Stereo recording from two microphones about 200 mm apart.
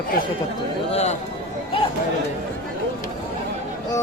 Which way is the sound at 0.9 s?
35° left (ahead or behind).